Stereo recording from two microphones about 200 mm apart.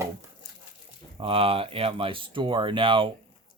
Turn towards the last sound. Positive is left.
turn(degrees=-25)  # may be behind; listen again after turning